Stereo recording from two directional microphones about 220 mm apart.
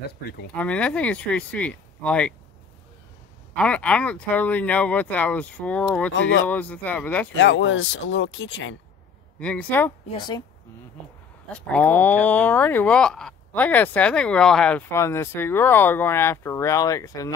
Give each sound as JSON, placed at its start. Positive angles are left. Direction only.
{"t": 0.0, "sound": "speech", "side_deg": 45}
{"t": 0.6, "sound": "speech", "side_deg": 5}
{"t": 3.5, "sound": "speech", "side_deg": 5}
{"t": 6.1, "sound": "speech", "side_deg": 55}
{"t": 6.5, "sound": "speech", "side_deg": 5}
{"t": 7.3, "sound": "speech", "side_deg": 60}
{"t": 9.4, "sound": "speech", "side_deg": 5}
{"t": 10.1, "sound": "speech", "side_deg": 20}
{"t": 11.5, "sound": "speech", "side_deg": 5}